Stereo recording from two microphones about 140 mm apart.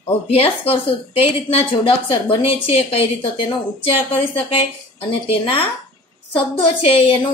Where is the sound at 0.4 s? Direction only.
40° left (ahead or behind).